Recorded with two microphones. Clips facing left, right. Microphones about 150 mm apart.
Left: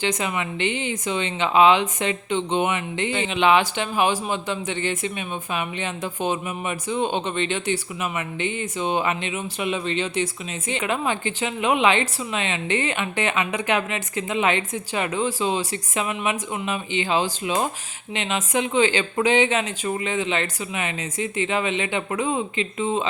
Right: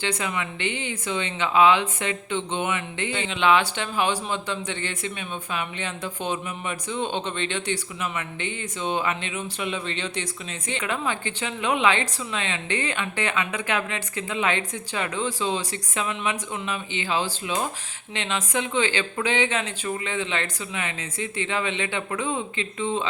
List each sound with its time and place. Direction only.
0.0 s speech: 15° left (ahead or behind)